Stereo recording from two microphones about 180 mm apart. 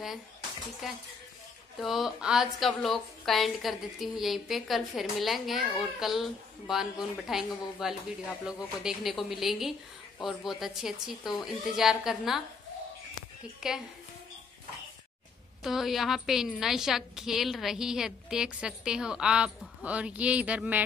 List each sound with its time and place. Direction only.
0.8 s a woman's voice: centre (ahead or behind)
13.6 s a woman's voice: 5° right (ahead or behind)
15.6 s a woman's voice: centre (ahead or behind)